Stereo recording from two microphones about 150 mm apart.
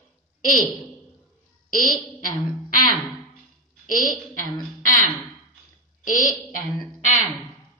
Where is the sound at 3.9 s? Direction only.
65° left (ahead or behind).